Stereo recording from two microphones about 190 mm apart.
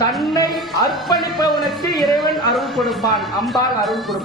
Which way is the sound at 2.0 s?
Centre (ahead or behind).